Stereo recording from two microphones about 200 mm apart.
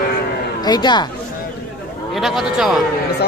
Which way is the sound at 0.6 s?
20° left (ahead or behind).